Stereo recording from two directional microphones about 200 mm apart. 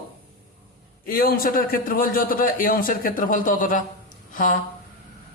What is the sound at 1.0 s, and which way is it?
A man's voice, 45° left (ahead or behind).